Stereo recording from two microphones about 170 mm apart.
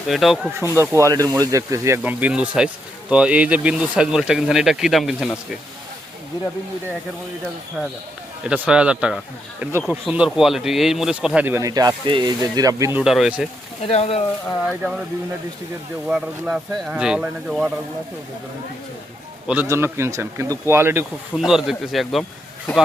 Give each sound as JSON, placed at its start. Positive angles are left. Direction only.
{"t": 0.1, "sound": "speech", "side_deg": 0}
{"t": 0.8, "sound": "a man's voice", "side_deg": -15}
{"t": 2.0, "sound": "a man's voice", "side_deg": -5}
{"t": 8.4, "sound": "a man's voice", "side_deg": -5}
{"t": 13.0, "sound": "speech", "side_deg": -5}
{"t": 13.8, "sound": "speech", "side_deg": 35}
{"t": 14.4, "sound": "speech", "side_deg": 0}
{"t": 16.0, "sound": "speech", "side_deg": -5}
{"t": 19.6, "sound": "a man's voice", "side_deg": -15}
{"t": 21.3, "sound": "speech", "side_deg": 0}